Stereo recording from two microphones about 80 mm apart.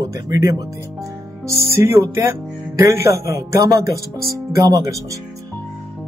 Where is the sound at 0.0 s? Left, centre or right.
Right.